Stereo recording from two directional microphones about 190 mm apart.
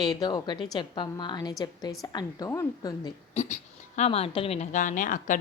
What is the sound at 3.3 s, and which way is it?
A woman's voice, 35° left (ahead or behind).